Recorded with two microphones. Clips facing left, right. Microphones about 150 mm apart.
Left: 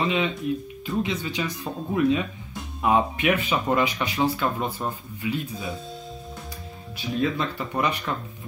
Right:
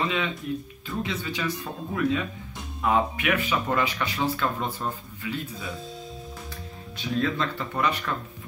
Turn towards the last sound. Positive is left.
turn(degrees=15)  # may be behind; listen again after turning